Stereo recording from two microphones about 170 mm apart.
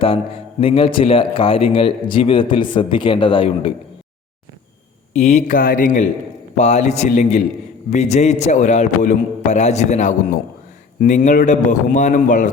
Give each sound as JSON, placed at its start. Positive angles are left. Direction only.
{"t": 0.6, "sound": "a man's voice", "side_deg": 35}
{"t": 5.1, "sound": "a man's voice", "side_deg": 45}